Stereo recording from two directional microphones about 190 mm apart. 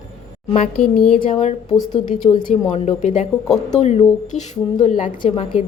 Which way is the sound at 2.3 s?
25° left (ahead or behind).